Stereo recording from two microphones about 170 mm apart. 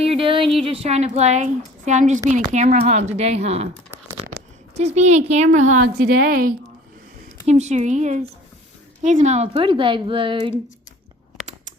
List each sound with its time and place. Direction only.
0.0 s a sound: 35° right (ahead or behind)
0.5 s a woman's voice: 35° right (ahead or behind)
4.9 s a woman's voice: 40° right (ahead or behind)
6.1 s a woman's voice: 60° right (ahead or behind)
7.4 s a woman's voice: 40° right (ahead or behind)
9.6 s speech: 30° right (ahead or behind)